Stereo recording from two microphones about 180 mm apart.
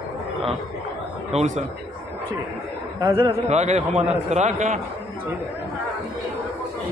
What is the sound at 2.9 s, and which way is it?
A man's voice, 25° right (ahead or behind).